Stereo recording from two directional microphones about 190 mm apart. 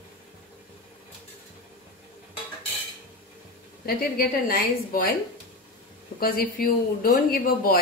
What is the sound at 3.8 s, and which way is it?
Speech, 50° left (ahead or behind).